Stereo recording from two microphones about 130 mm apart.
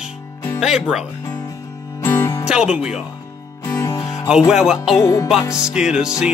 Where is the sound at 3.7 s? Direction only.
25° left (ahead or behind).